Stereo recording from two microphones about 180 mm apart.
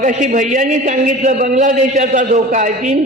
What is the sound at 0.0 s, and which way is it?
A man's voice, 45° right (ahead or behind).